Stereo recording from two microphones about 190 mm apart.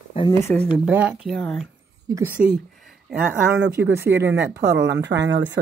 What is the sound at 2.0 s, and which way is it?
Speech, 15° right (ahead or behind).